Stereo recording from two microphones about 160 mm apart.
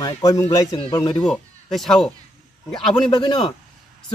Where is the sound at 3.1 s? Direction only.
30° left (ahead or behind).